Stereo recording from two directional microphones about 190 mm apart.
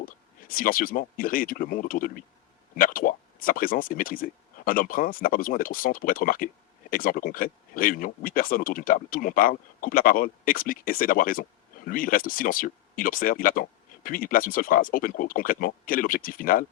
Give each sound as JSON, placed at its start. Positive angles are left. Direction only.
{"t": 0.0, "sound": "speech", "side_deg": 50}